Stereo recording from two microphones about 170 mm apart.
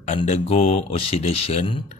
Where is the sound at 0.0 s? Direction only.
40° left (ahead or behind).